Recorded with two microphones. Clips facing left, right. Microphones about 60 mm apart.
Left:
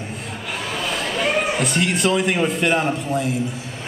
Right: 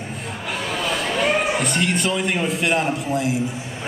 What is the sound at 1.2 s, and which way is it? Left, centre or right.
A man's voice, centre.